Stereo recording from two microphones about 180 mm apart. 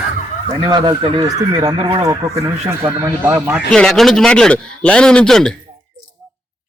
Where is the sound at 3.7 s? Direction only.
5° left (ahead or behind).